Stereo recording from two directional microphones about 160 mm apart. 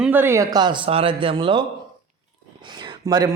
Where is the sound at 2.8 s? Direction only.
25° right (ahead or behind).